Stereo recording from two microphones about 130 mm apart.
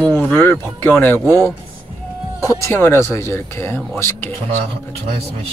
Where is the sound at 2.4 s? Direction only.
20° left (ahead or behind).